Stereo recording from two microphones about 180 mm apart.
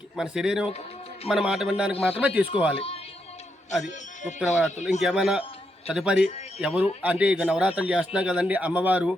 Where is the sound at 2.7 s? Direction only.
35° left (ahead or behind).